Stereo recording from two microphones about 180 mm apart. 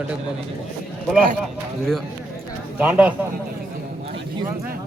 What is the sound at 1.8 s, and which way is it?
Speech, centre (ahead or behind).